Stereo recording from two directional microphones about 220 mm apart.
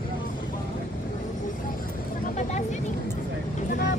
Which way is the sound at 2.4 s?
30° left (ahead or behind).